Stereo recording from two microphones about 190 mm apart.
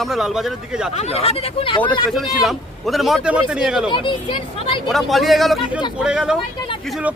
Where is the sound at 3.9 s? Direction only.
25° left (ahead or behind).